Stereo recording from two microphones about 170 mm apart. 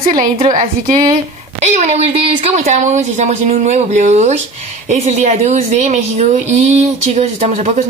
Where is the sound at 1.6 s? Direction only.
40° right (ahead or behind).